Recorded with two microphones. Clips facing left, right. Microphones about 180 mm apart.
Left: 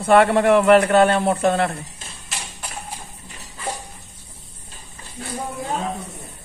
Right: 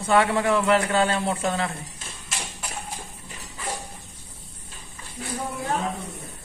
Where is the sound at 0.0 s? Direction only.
65° left (ahead or behind).